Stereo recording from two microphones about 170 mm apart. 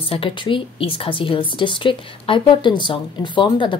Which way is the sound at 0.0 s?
30° left (ahead or behind).